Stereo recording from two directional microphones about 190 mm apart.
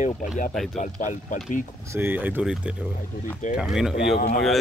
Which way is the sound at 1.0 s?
45° left (ahead or behind).